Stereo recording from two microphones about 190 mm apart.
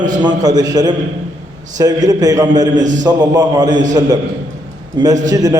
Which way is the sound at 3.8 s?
40° right (ahead or behind).